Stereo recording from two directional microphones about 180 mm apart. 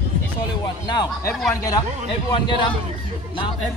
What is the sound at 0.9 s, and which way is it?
Speech, 25° left (ahead or behind).